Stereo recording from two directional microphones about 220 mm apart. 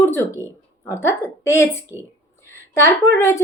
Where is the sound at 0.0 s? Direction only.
10° left (ahead or behind).